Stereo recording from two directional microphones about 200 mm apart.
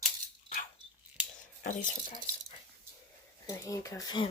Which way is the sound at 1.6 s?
40° left (ahead or behind).